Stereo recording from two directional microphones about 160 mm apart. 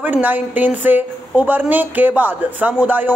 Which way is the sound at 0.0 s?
10° right (ahead or behind).